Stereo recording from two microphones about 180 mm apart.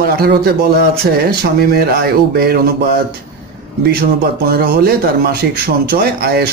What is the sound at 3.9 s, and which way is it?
A man's voice, 60° right (ahead or behind).